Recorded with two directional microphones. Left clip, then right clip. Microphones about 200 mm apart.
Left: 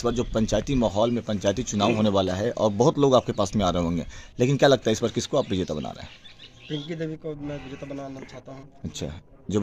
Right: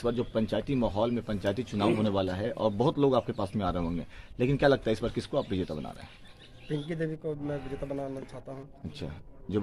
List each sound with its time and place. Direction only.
0.0 s speech: 60° left (ahead or behind)
6.9 s a man's voice: 10° right (ahead or behind)
8.9 s a man's voice: 65° left (ahead or behind)